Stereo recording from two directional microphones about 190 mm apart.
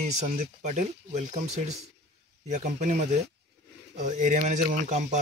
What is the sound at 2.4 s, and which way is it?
Speech, 40° right (ahead or behind).